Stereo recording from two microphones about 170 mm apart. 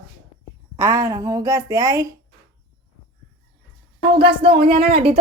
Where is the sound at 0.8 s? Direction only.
15° right (ahead or behind).